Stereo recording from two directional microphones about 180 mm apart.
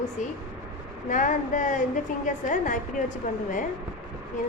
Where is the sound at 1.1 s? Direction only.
45° left (ahead or behind).